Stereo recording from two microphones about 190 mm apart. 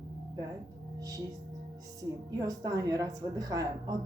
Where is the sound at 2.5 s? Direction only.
20° right (ahead or behind).